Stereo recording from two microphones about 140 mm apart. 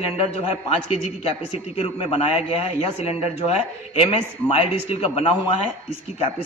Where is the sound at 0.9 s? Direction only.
45° left (ahead or behind).